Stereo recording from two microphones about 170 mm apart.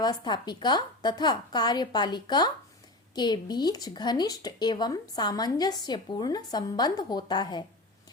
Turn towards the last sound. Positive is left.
turn(degrees=25)  # may be behind; listen again after turning